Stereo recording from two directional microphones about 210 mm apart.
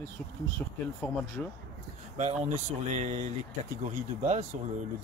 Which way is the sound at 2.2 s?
35° right (ahead or behind).